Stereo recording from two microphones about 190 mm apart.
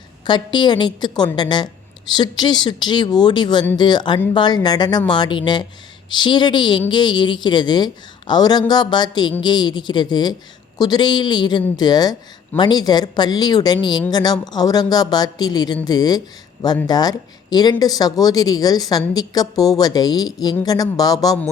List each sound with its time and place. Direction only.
0.3 s speech: 25° left (ahead or behind)